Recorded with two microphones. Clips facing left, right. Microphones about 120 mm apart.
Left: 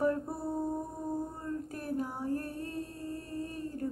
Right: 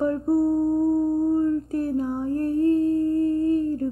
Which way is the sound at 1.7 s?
25° right (ahead or behind).